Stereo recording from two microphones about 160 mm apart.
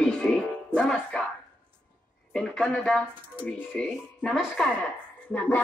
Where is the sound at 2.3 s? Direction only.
5° left (ahead or behind).